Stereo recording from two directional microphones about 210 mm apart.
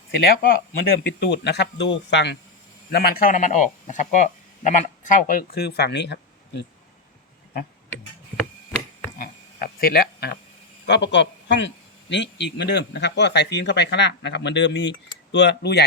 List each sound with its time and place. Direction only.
0.3 s speech: 45° left (ahead or behind)
9.1 s a sound: 45° left (ahead or behind)
10.8 s a man's voice: 55° left (ahead or behind)